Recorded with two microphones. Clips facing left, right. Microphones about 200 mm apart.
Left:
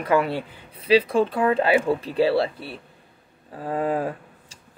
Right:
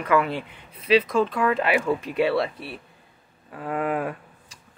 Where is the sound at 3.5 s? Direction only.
30° left (ahead or behind).